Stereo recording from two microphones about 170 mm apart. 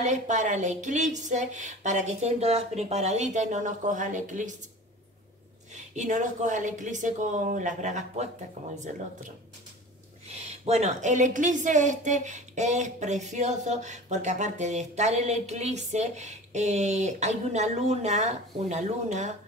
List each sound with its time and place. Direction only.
0.0 s a woman's voice: 45° right (ahead or behind)
5.9 s a woman's voice: 45° right (ahead or behind)